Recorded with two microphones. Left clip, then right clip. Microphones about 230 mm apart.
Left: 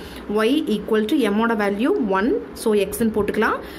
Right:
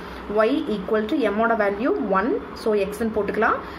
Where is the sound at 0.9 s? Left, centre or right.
Left.